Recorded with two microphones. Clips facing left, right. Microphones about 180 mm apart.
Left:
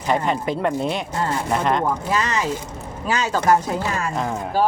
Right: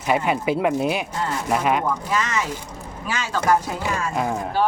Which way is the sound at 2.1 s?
35° left (ahead or behind).